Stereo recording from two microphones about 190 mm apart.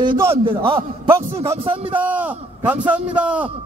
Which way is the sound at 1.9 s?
10° right (ahead or behind).